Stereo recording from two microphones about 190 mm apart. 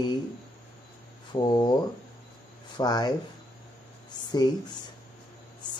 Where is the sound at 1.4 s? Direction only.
25° left (ahead or behind).